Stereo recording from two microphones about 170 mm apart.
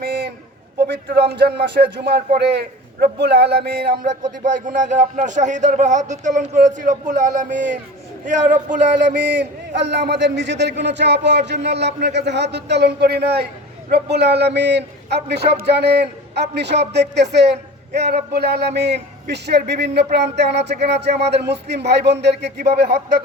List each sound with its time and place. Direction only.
0.8 s speech: 70° right (ahead or behind)
4.4 s speech: 45° right (ahead or behind)
9.4 s a man's voice: 90° right; by 22.9 s 70° right (ahead or behind)